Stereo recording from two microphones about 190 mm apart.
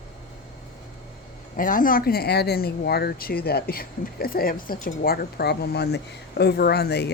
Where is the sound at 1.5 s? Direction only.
45° left (ahead or behind).